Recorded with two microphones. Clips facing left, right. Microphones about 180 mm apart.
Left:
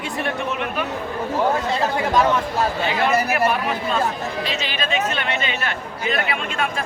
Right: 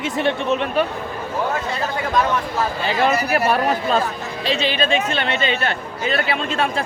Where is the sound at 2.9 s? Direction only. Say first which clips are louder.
Right 5 dB; 35° right (ahead or behind).